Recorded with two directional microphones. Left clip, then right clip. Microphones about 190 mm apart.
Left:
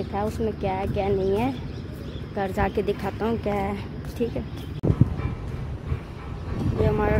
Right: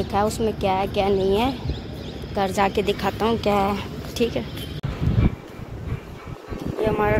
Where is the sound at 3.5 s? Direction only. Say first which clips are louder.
Right 6 dB; 5° right (ahead or behind).